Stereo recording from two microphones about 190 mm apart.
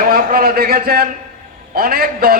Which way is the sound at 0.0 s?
50° right (ahead or behind).